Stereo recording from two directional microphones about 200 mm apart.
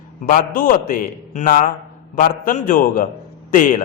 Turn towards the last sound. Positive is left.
turn(degrees=40)  # may be behind; listen again after turning